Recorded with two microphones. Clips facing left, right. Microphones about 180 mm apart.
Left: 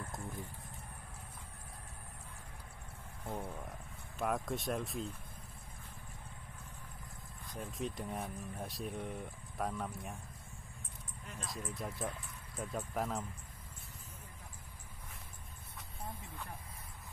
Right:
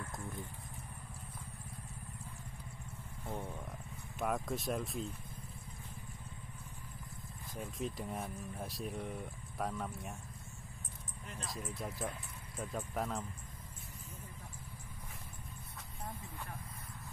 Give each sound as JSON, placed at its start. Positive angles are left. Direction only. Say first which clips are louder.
{"t": 3.3, "sound": "vehicle", "louder": "left 1 dB", "side_deg": 10}
{"t": 4.2, "sound": "speech", "louder": "even", "side_deg": 0}
{"t": 7.5, "sound": "speech", "louder": "even", "side_deg": 0}
{"t": 11.3, "sound": "speech", "louder": "even", "side_deg": 0}